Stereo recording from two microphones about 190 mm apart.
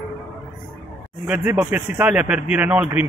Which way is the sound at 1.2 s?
5° right (ahead or behind).